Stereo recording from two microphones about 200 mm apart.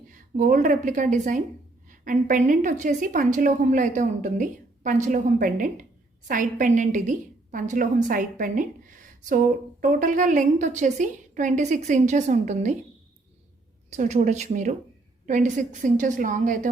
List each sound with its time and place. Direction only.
0.1 s a woman's voice: 40° right (ahead or behind)
13.9 s a woman's voice: 35° right (ahead or behind)